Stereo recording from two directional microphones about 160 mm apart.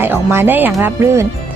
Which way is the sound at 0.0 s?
15° right (ahead or behind).